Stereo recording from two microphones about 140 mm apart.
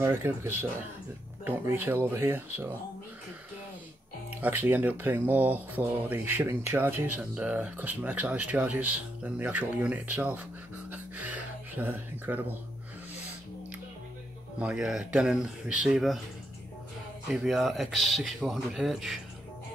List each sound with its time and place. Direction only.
0.0 s speech: 15° right (ahead or behind)
4.3 s speech: 10° right (ahead or behind)
10.9 s music: 10° right (ahead or behind)
14.6 s speech: 5° right (ahead or behind)
17.3 s speech: centre (ahead or behind)